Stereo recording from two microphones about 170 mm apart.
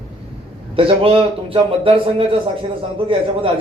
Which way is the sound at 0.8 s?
30° right (ahead or behind).